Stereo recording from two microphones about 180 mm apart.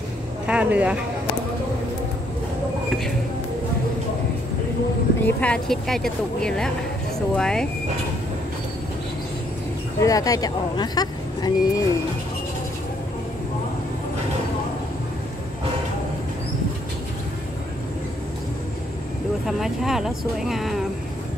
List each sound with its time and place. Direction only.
0.5 s speech: 10° right (ahead or behind)
5.2 s speech: 5° left (ahead or behind)
9.9 s speech: 20° left (ahead or behind)
19.4 s speech: centre (ahead or behind)